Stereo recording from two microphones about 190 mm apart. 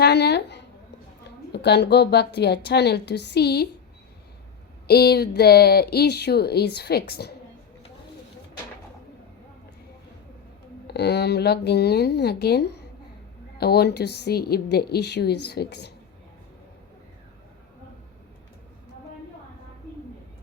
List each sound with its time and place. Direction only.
0.0 s a sound: 60° left (ahead or behind)
1.5 s speech: 60° left (ahead or behind)
4.9 s speech: 55° left (ahead or behind)
10.8 s speech: 60° left (ahead or behind)